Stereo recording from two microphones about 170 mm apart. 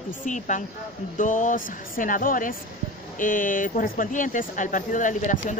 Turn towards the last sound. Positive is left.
turn(degrees=50)  # may be behind; listen again after turning